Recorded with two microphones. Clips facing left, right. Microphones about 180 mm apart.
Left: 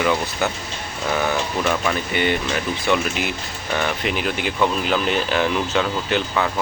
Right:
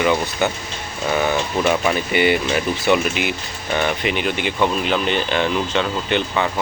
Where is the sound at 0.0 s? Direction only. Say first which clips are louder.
Right 2 dB; centre (ahead or behind).